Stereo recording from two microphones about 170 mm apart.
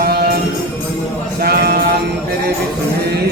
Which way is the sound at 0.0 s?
65° right (ahead or behind).